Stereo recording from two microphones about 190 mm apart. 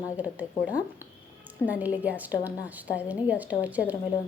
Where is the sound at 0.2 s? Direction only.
5° right (ahead or behind).